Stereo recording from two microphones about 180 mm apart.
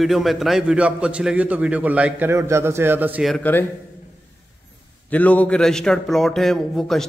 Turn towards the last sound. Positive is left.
turn(degrees=0)  # may be behind; listen again after turning